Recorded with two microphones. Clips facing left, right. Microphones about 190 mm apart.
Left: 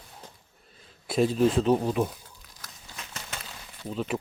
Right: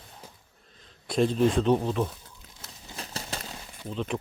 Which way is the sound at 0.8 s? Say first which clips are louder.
Even; 5° left (ahead or behind).